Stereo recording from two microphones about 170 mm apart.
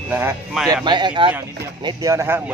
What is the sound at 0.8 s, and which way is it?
Speech, 25° right (ahead or behind).